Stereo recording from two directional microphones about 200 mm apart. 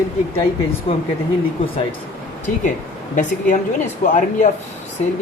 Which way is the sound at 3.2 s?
40° left (ahead or behind).